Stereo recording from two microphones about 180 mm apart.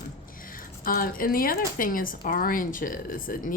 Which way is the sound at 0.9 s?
55° left (ahead or behind).